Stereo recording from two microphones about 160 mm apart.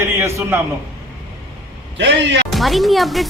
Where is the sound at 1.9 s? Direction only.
90° right.